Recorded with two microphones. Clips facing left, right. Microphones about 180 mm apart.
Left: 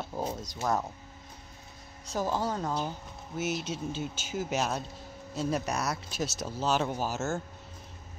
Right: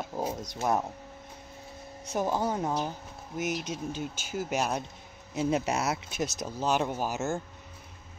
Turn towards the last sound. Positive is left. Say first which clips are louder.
# right 1 dB
turn(degrees=-15)  # may be behind; listen again after turning